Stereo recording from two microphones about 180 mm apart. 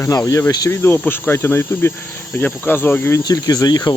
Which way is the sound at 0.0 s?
20° left (ahead or behind).